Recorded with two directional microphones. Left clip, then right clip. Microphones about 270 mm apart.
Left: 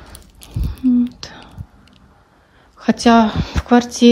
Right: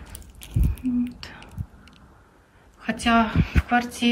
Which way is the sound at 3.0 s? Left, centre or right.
Centre.